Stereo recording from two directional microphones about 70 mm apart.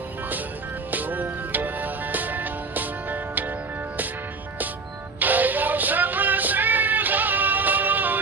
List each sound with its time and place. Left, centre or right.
0.9 s music: right
5.2 s music: right